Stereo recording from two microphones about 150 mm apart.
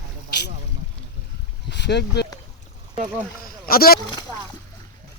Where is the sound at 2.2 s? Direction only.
90° left.